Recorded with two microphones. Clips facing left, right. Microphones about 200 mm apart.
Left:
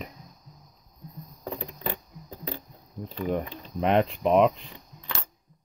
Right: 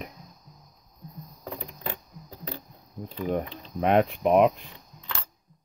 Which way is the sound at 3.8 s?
45° right (ahead or behind).